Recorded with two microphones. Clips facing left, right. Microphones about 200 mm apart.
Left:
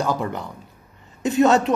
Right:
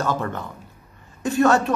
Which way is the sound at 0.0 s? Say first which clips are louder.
Left 1 dB; 15° left (ahead or behind).